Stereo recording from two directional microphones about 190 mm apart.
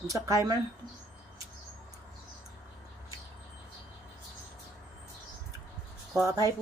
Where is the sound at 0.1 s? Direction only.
15° right (ahead or behind).